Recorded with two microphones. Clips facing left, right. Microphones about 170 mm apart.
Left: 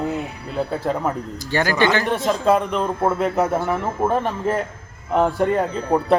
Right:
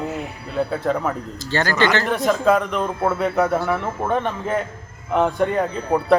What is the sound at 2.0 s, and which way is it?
Speech, 30° left (ahead or behind).